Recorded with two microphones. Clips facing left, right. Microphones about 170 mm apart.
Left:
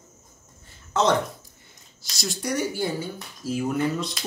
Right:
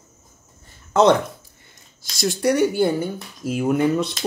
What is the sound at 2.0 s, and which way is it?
Speech, 55° right (ahead or behind).